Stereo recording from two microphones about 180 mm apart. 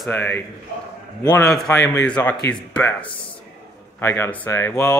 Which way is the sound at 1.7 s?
15° left (ahead or behind).